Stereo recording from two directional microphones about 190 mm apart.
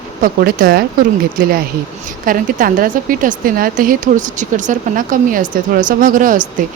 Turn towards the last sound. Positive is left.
turn(degrees=-45)  # may be behind; listen again after turning